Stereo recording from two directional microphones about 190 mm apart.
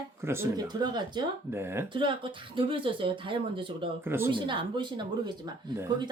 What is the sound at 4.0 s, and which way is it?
Speech, 10° right (ahead or behind).